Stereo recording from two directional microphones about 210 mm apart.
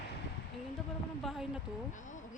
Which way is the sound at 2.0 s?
35° left (ahead or behind).